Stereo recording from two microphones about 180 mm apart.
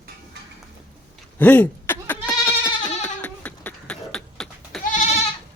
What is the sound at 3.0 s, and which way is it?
Beatboxing, 10° left (ahead or behind).